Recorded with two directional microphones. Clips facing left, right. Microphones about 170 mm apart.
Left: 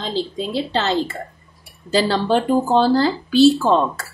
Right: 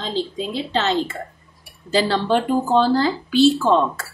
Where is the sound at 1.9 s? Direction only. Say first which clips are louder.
Left 1 dB; 35° left (ahead or behind).